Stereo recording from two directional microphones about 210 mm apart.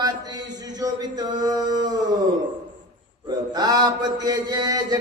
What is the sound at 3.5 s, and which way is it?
Mantra, 20° right (ahead or behind).